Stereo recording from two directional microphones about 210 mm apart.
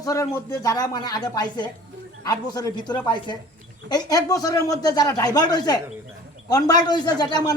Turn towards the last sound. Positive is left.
turn(degrees=20)  # may be behind; listen again after turning